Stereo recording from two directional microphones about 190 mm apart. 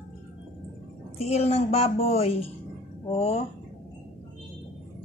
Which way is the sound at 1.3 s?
35° left (ahead or behind).